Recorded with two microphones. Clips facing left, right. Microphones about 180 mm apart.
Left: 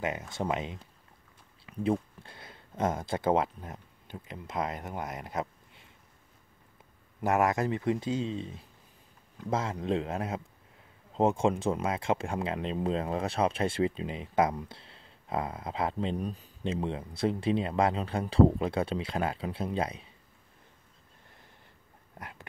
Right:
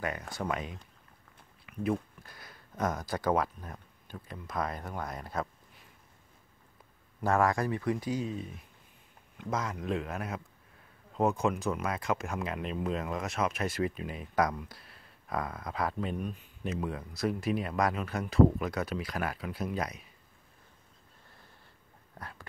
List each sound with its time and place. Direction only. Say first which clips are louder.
0.3 s speech: left 3 dB; 25° left (ahead or behind)
7.2 s speech: left 1 dB; 20° left (ahead or behind)
16.2 s speech: left 2 dB; 35° left (ahead or behind)
22.2 s dog: left 1 dB; 20° left (ahead or behind)